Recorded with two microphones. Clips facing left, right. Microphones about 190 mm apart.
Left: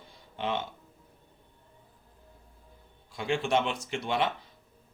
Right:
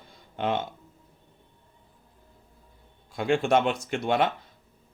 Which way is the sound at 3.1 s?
50° right (ahead or behind).